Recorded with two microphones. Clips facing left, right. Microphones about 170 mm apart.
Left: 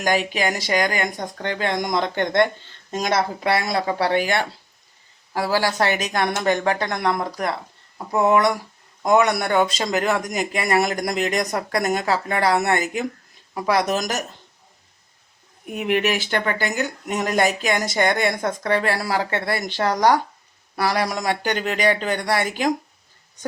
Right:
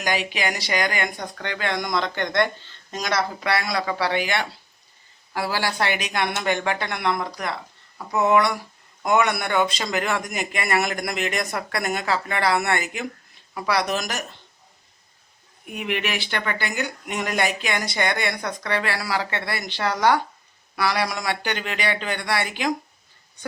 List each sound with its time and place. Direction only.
0.0 s speech: 45° left (ahead or behind)
1.7 s speech: 20° left (ahead or behind)
3.9 s speech: 45° left (ahead or behind)
8.3 s speech: 45° left (ahead or behind)
15.6 s speech: 45° left (ahead or behind)